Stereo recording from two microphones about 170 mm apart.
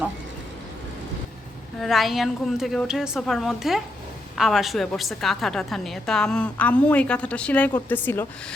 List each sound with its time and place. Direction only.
1.8 s a woman's voice: centre (ahead or behind)